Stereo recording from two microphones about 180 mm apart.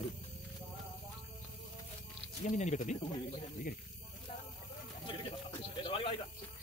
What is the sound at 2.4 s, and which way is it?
Speech, 40° left (ahead or behind).